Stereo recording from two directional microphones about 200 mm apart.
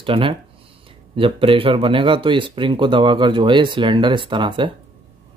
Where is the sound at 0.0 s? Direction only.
25° right (ahead or behind).